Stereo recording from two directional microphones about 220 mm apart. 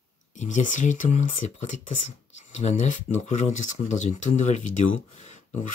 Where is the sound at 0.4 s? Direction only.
35° left (ahead or behind).